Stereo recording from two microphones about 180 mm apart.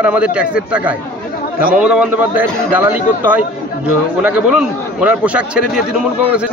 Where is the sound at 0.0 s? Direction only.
5° right (ahead or behind).